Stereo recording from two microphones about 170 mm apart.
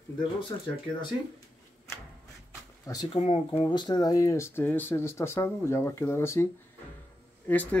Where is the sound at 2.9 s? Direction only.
25° left (ahead or behind).